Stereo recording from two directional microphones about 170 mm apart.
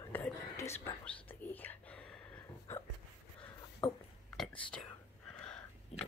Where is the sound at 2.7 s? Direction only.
15° left (ahead or behind).